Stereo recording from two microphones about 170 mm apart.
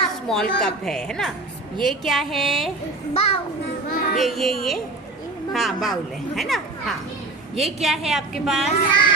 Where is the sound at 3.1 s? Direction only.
35° left (ahead or behind).